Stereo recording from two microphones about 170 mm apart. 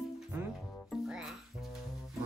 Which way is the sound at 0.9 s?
5° right (ahead or behind).